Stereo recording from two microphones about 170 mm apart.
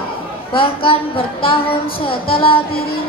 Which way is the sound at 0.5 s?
30° left (ahead or behind).